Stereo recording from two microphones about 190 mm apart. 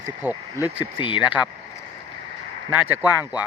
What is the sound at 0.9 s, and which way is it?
Speech, 25° left (ahead or behind).